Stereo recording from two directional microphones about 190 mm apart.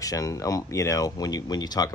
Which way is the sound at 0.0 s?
20° left (ahead or behind).